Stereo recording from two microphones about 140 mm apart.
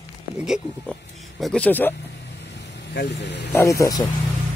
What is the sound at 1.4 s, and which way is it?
Speech, 5° left (ahead or behind).